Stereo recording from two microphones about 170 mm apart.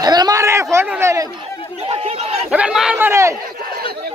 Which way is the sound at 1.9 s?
35° right (ahead or behind).